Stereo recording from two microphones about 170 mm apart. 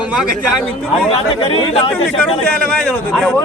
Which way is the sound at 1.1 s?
35° left (ahead or behind).